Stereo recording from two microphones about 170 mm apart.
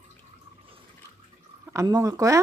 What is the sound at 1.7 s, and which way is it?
Speech, 20° right (ahead or behind).